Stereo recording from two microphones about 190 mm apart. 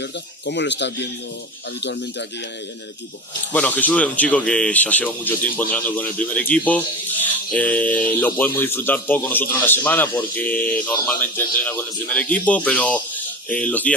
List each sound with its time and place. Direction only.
0.0 s speech: 65° left (ahead or behind)
3.5 s a man's voice: 10° left (ahead or behind)